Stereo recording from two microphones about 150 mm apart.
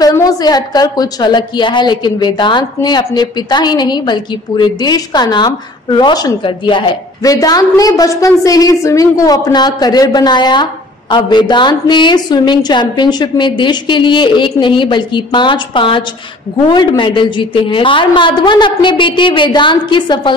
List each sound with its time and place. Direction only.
0.0 s a woman's voice: 25° left (ahead or behind)